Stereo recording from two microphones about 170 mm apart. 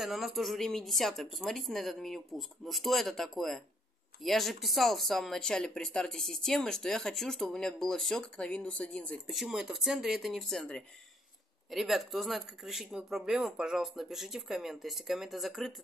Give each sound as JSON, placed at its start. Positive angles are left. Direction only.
{"t": 0.0, "sound": "speech", "side_deg": 0}